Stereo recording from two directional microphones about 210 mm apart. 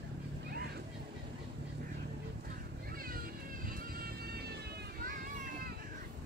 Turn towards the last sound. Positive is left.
turn(degrees=-50)  # may be behind; listen again after turning